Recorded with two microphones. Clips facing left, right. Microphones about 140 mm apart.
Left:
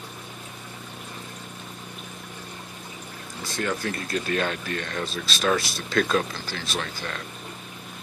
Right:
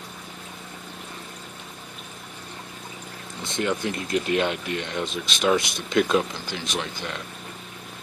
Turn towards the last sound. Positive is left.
turn(degrees=-20)  # may be behind; listen again after turning